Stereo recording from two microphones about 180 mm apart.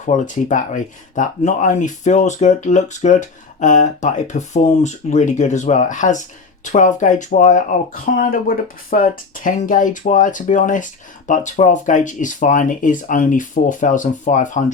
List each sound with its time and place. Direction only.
0.0 s speech: 45° left (ahead or behind)